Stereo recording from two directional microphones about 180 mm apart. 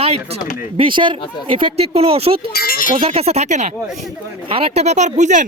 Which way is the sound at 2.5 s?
55° left (ahead or behind).